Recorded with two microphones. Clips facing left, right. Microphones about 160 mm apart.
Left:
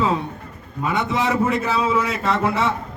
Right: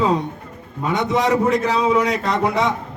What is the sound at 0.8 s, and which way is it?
Speech, 40° right (ahead or behind).